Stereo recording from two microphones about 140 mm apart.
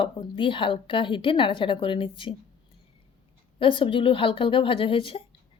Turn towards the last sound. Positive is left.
turn(degrees=40)  # may be behind; listen again after turning